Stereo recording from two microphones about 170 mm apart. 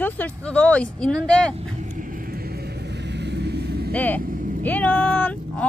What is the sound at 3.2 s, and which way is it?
Vehicle, 85° right.